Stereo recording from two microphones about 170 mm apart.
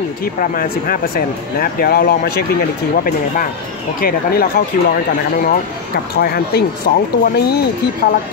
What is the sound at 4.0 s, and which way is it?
Speech, 60° left (ahead or behind).